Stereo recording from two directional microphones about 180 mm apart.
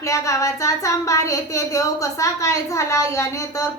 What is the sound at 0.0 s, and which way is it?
A woman's voice, 15° left (ahead or behind).